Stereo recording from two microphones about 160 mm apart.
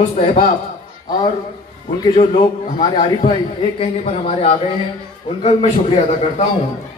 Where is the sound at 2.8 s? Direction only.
35° left (ahead or behind).